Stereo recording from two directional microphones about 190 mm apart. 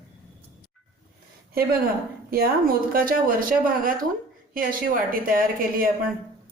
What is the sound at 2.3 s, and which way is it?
Speech, 50° right (ahead or behind).